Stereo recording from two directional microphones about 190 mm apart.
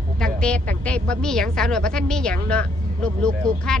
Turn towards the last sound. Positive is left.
turn(degrees=5)  # may be behind; listen again after turning